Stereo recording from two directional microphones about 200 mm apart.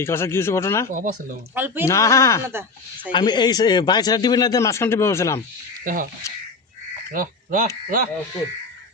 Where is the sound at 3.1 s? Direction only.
20° left (ahead or behind).